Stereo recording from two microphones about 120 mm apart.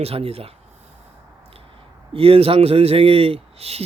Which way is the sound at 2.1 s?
50° right (ahead or behind).